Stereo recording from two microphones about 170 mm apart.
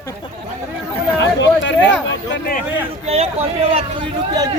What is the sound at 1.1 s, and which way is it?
Speech, 90° left.